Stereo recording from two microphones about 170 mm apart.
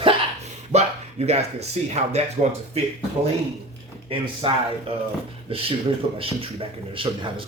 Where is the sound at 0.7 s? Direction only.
40° right (ahead or behind).